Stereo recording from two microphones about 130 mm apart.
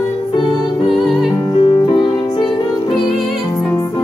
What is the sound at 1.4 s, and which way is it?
Music, 35° left (ahead or behind).